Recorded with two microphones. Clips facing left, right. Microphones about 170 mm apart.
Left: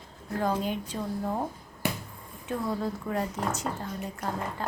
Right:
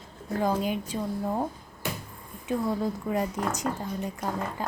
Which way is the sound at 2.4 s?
10° right (ahead or behind).